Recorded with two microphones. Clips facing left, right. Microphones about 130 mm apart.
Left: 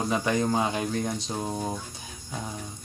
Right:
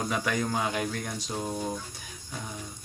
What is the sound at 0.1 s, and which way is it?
Speech, 25° left (ahead or behind).